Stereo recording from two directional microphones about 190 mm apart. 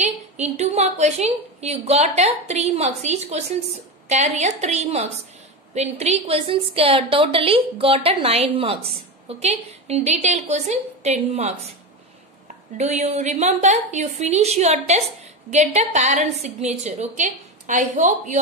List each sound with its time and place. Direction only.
0.0 s a woman's voice: 35° right (ahead or behind)
12.7 s a woman's voice: 35° right (ahead or behind)